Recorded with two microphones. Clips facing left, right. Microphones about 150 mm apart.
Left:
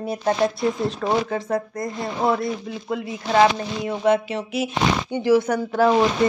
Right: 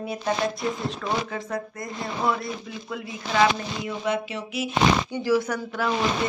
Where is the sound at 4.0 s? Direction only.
60° left (ahead or behind).